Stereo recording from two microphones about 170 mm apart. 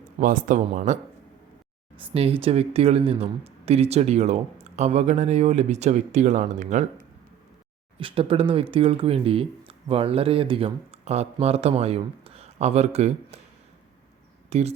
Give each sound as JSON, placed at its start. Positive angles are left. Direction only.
{"t": 0.2, "sound": "speech", "side_deg": -50}
{"t": 2.1, "sound": "speech", "side_deg": -35}
{"t": 7.9, "sound": "speech", "side_deg": -30}
{"t": 14.5, "sound": "speech", "side_deg": -40}